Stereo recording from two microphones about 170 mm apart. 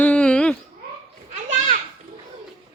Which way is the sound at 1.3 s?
45° right (ahead or behind).